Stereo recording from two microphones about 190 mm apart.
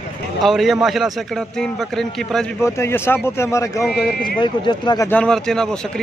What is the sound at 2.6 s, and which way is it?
Speech, 15° left (ahead or behind).